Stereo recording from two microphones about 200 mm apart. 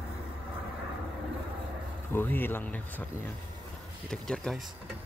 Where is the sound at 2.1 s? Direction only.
10° left (ahead or behind).